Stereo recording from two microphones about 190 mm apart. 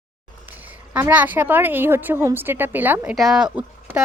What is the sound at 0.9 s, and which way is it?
A woman's voice, 10° right (ahead or behind).